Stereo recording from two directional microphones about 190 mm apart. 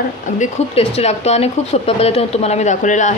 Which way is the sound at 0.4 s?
35° left (ahead or behind).